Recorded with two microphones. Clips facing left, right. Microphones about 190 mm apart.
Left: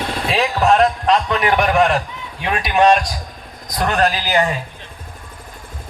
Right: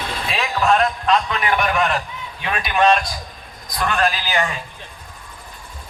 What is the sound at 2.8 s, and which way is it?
A man's voice, 40° left (ahead or behind).